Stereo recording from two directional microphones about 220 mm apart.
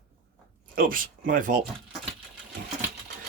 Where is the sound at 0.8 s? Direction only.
40° right (ahead or behind).